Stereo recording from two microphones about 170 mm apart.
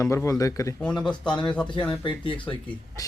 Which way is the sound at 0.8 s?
5° left (ahead or behind).